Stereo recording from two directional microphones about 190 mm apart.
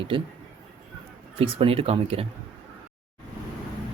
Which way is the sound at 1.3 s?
30° right (ahead or behind).